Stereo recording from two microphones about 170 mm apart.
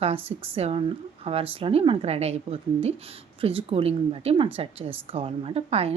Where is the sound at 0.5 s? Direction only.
35° right (ahead or behind).